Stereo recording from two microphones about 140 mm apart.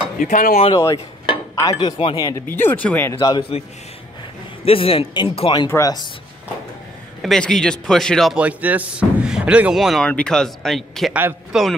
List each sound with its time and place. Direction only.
0.2 s speech: 70° left (ahead or behind)
0.7 s a man's voice: 25° left (ahead or behind)
1.2 s dishes: 30° left (ahead or behind)
2.1 s a man's voice: 25° left (ahead or behind)
2.5 s speech: 15° left (ahead or behind)
3.1 s a man's voice: 30° left (ahead or behind)
4.6 s speech: 40° left (ahead or behind)
5.7 s a man's voice: 20° left (ahead or behind)
7.2 s speech: 5° left (ahead or behind)
8.4 s speech: 10° right (ahead or behind)